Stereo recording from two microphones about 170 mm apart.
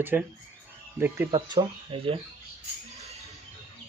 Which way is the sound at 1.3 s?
30° right (ahead or behind).